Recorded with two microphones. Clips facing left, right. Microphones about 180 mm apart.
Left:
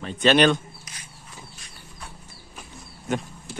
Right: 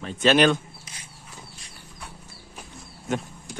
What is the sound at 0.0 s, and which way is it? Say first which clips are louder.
Speech: left 1 dB; centre (ahead or behind).